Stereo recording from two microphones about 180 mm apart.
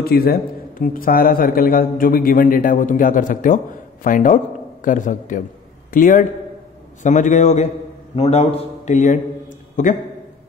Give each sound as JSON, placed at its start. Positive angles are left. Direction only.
{"t": 0.0, "sound": "a man's voice", "side_deg": 55}